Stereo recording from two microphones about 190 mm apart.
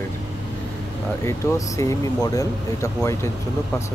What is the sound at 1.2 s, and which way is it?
Speech, 15° left (ahead or behind).